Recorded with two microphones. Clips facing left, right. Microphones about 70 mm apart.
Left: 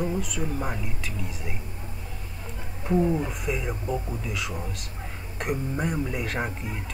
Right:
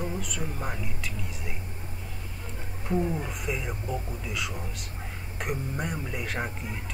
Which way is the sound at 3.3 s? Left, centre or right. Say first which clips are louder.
Left 3 dB; centre.